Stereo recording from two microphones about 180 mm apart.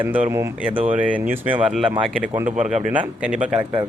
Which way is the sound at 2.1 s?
10° right (ahead or behind).